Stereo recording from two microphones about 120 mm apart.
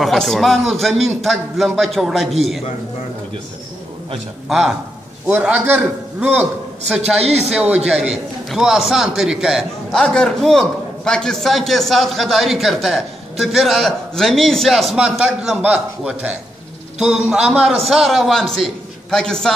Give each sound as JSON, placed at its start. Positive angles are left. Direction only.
{"t": 0.0, "sound": "a man's voice", "side_deg": 0}
{"t": 4.5, "sound": "a man's voice", "side_deg": 0}
{"t": 5.2, "sound": "a man's voice", "side_deg": -15}
{"t": 7.2, "sound": "speech", "side_deg": -60}
{"t": 7.7, "sound": "a man's voice", "side_deg": -5}